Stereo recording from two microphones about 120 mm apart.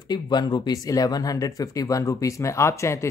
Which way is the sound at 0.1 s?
35° left (ahead or behind).